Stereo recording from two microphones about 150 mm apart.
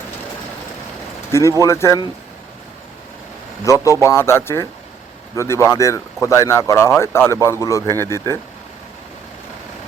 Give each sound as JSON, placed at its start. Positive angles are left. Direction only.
{"t": 1.3, "sound": "speech", "side_deg": 20}
{"t": 3.6, "sound": "speech", "side_deg": 20}